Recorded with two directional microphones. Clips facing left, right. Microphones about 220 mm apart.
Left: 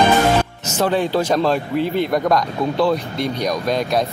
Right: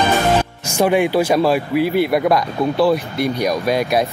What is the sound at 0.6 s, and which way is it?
Speech, 10° right (ahead or behind).